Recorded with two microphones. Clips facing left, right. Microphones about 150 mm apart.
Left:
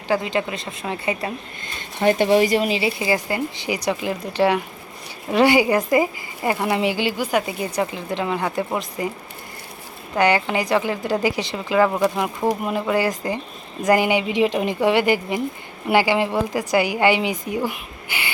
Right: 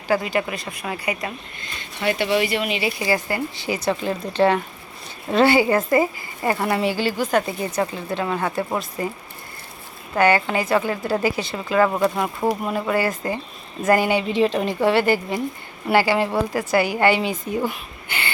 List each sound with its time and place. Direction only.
0.1 s a woman's voice: 20° left (ahead or behind)
2.0 s a woman's voice: 45° left (ahead or behind); by 9.0 s 15° left (ahead or behind)
10.2 s speech: 15° left (ahead or behind)